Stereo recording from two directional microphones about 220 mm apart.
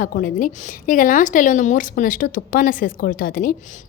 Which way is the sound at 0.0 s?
40° left (ahead or behind).